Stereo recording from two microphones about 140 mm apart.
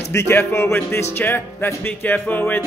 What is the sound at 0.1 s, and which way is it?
Music, 20° left (ahead or behind).